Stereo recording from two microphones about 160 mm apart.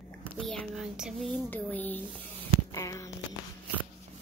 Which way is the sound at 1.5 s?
10° left (ahead or behind).